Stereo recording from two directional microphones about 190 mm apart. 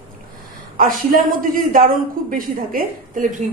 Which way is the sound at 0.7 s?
45° right (ahead or behind).